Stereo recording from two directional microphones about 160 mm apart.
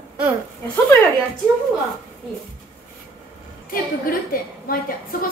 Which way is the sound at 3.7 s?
65° left (ahead or behind).